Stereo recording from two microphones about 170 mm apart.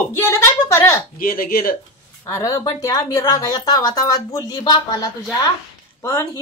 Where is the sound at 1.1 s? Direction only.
55° left (ahead or behind).